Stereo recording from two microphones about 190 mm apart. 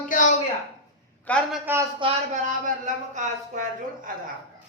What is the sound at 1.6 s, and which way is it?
Speech, 10° right (ahead or behind).